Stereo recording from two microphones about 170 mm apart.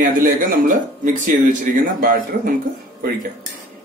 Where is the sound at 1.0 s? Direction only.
50° right (ahead or behind).